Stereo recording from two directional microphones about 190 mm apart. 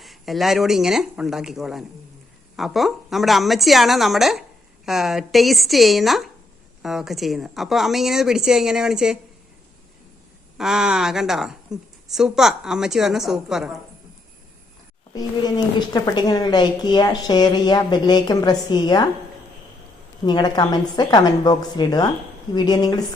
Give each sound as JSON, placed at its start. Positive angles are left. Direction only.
{"t": 0.0, "sound": "a woman's voice", "side_deg": 0}
{"t": 10.6, "sound": "a woman's voice", "side_deg": 0}
{"t": 15.1, "sound": "a woman's voice", "side_deg": 20}
{"t": 20.2, "sound": "a woman's voice", "side_deg": 20}